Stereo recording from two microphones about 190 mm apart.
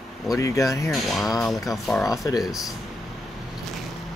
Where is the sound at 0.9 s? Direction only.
Centre (ahead or behind).